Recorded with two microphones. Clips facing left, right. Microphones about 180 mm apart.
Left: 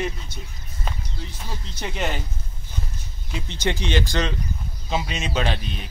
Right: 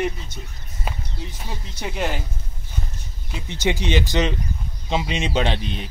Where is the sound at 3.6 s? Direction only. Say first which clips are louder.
Right 2 dB; 15° right (ahead or behind).